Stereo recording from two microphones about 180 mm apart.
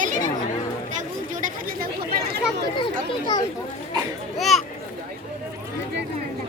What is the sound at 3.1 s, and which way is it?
Speech, 25° left (ahead or behind).